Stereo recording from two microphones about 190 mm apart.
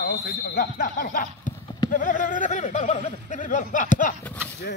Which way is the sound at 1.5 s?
20° left (ahead or behind).